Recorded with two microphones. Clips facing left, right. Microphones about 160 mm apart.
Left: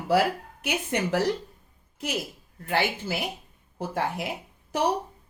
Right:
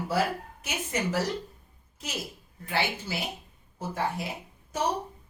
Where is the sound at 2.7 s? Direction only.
50° left (ahead or behind).